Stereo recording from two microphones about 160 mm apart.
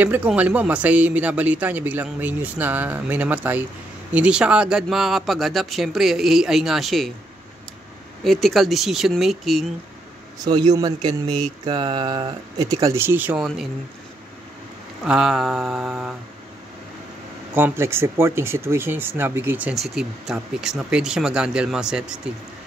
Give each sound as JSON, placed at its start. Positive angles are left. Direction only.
{"t": 0.0, "sound": "speech", "side_deg": -10}
{"t": 8.2, "sound": "speech", "side_deg": 0}
{"t": 10.4, "sound": "speech", "side_deg": -25}
{"t": 15.0, "sound": "speech", "side_deg": -5}
{"t": 17.6, "sound": "speech", "side_deg": -15}